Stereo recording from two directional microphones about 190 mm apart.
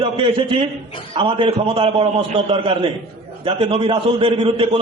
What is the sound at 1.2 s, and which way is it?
A man's voice, 25° right (ahead or behind).